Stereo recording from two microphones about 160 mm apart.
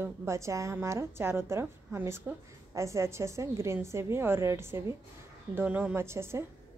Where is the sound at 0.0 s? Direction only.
15° right (ahead or behind).